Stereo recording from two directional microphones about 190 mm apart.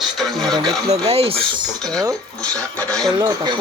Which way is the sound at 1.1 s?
30° right (ahead or behind).